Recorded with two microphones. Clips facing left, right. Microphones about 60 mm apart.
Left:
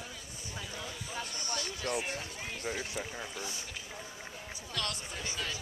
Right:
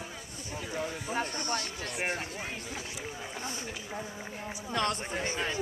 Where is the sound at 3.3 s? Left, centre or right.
Right.